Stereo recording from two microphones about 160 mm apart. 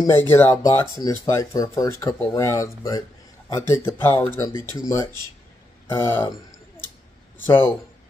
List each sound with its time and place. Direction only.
0.0 s speech: 15° left (ahead or behind)
5.9 s speech: 15° left (ahead or behind)
7.4 s speech: 15° left (ahead or behind)